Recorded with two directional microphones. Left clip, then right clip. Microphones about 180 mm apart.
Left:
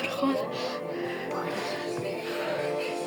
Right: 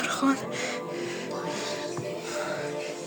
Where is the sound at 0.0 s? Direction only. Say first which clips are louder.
Right 2 dB; 25° right (ahead or behind).